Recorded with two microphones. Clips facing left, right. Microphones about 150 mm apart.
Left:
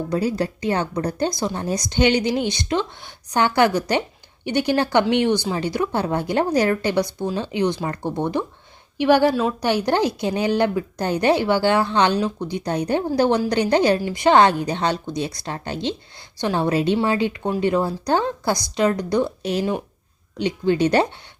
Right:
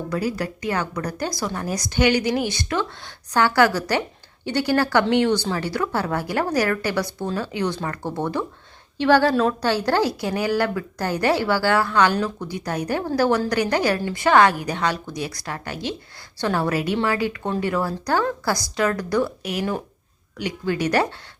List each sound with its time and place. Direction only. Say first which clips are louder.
0.1 s a woman's voice: left 3 dB; 25° left (ahead or behind)